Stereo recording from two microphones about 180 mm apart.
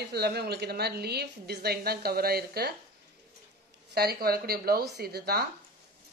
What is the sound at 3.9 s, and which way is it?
Speech, 60° right (ahead or behind).